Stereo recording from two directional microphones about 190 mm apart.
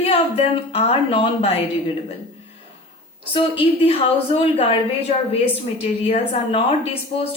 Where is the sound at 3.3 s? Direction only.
30° left (ahead or behind).